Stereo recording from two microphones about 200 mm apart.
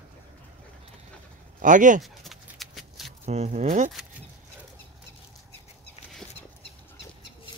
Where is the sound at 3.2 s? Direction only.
35° right (ahead or behind).